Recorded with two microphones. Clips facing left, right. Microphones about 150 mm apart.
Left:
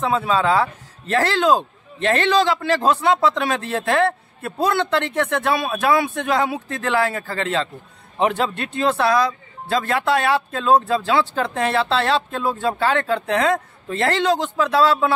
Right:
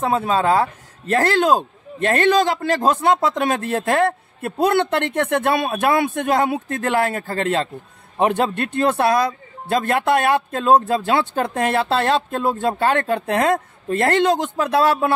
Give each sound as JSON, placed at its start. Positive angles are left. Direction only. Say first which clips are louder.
{"t": 0.0, "sound": "a man's voice", "louder": "right 1 dB", "side_deg": -45}